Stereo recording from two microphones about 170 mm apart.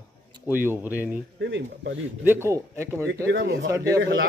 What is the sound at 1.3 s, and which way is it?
Speech, 90° right.